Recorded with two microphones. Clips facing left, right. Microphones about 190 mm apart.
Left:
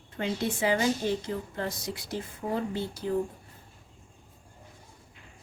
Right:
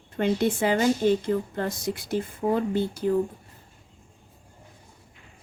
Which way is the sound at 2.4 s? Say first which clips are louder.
Right 7 dB; 70° right (ahead or behind).